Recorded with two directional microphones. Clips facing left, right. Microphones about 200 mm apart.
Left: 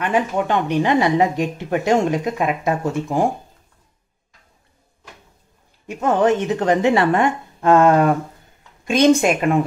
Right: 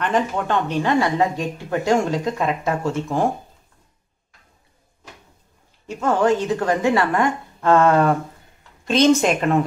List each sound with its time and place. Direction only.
0.0 s speech: 10° left (ahead or behind)
5.9 s a woman's voice: 20° left (ahead or behind)